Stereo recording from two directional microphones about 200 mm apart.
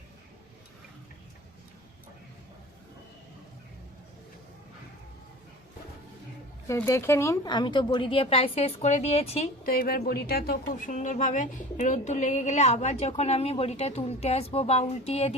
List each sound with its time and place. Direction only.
6.7 s speech: 15° left (ahead or behind); by 9.5 s 30° left (ahead or behind)
9.6 s a woman's voice: 50° left (ahead or behind); by 15.4 s 30° left (ahead or behind)